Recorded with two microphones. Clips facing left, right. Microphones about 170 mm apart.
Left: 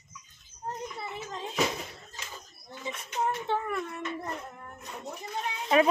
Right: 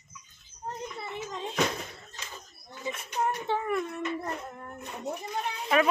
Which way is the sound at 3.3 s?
15° right (ahead or behind).